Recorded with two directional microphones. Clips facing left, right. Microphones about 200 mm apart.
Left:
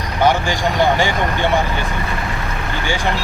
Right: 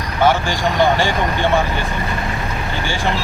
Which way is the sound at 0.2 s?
15° left (ahead or behind).